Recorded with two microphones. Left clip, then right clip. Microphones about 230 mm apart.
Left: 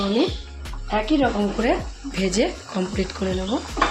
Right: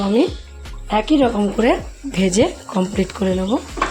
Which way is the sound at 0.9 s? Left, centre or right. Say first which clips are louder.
Right 5 dB; right.